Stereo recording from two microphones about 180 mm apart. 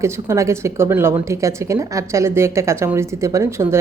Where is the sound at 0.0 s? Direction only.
15° right (ahead or behind).